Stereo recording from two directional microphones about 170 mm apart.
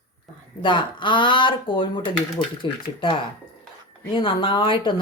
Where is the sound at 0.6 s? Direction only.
30° left (ahead or behind).